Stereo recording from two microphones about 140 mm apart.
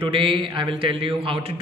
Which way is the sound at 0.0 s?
40° right (ahead or behind).